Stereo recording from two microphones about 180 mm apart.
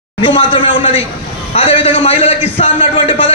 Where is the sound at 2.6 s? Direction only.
30° left (ahead or behind).